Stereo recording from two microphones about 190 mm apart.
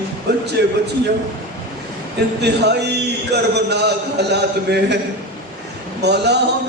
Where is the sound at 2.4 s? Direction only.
60° right (ahead or behind).